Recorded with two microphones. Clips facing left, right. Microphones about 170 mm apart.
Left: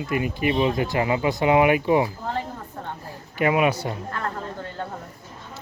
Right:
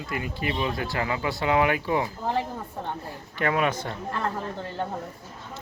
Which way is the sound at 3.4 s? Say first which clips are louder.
Left 4 dB; 10° left (ahead or behind).